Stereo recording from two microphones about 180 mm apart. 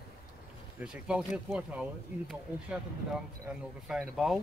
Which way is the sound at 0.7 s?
5° right (ahead or behind).